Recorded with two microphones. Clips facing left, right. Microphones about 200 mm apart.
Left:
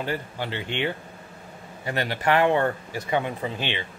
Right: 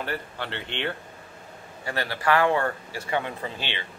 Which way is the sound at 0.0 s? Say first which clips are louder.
Left 3 dB; 15° left (ahead or behind).